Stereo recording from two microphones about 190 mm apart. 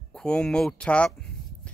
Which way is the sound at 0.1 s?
5° left (ahead or behind).